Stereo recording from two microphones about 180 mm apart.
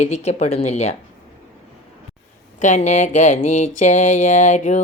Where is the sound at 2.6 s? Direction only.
40° left (ahead or behind).